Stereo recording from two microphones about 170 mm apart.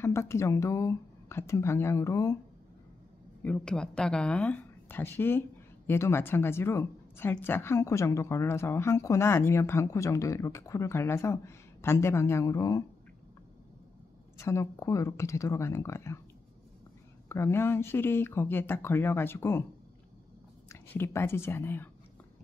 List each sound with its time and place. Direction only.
0.0 s a woman's voice: 15° left (ahead or behind)
3.4 s a woman's voice: 5° left (ahead or behind)
14.4 s a woman's voice: 15° left (ahead or behind)
17.3 s a woman's voice: 15° left (ahead or behind)
20.6 s speech: 15° left (ahead or behind)